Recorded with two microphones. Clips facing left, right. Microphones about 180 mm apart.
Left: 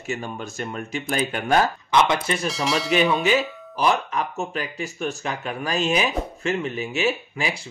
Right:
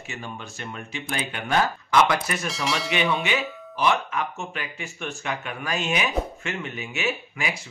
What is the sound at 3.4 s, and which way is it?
Music, centre (ahead or behind).